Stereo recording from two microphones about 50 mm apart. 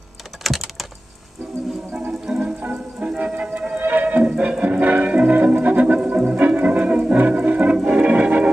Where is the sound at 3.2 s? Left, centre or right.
Right.